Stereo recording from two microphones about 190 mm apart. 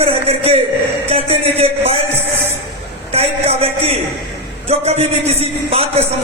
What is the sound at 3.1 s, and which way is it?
A man's voice, 35° right (ahead or behind).